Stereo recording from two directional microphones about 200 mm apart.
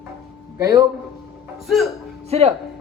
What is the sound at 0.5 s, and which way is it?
Speech, 15° right (ahead or behind).